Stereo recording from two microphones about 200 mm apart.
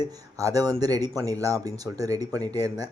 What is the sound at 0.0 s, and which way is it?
Speech, 15° right (ahead or behind).